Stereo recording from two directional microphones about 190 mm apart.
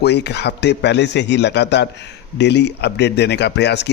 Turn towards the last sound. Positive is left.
turn(degrees=65)  # may be behind; listen again after turning